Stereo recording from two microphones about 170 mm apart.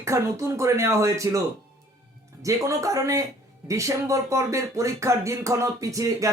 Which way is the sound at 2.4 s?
20° right (ahead or behind).